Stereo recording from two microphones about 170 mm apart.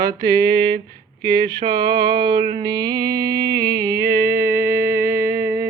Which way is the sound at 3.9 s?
65° right (ahead or behind).